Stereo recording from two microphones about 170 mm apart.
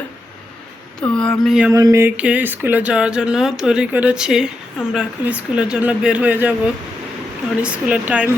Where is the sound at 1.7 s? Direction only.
20° right (ahead or behind).